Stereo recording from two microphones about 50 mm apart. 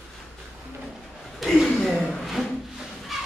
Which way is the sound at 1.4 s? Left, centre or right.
Centre.